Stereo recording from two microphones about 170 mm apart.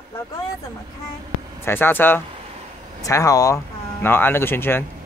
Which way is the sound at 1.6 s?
10° left (ahead or behind).